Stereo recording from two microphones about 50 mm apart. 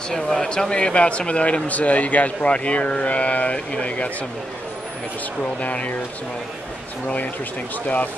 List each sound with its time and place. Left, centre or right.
0.1 s speech: centre
5.4 s speech: left